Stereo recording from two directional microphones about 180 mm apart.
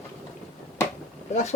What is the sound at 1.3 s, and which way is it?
Speech, 40° left (ahead or behind).